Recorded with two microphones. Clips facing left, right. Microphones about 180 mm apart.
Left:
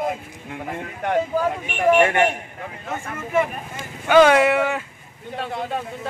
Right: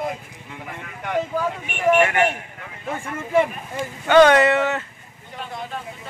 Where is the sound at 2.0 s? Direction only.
30° left (ahead or behind).